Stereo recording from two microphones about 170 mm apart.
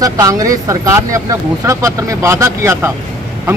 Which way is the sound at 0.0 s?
20° right (ahead or behind).